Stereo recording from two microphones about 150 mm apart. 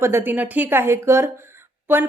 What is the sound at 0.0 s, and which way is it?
A woman's voice, 15° right (ahead or behind).